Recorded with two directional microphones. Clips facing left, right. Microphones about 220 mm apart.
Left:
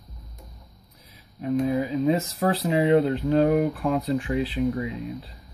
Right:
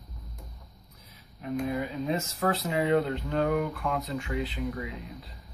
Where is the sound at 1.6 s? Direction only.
30° left (ahead or behind).